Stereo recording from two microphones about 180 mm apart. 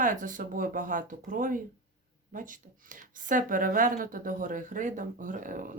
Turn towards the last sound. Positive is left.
turn(degrees=-50)  # may be behind; listen again after turning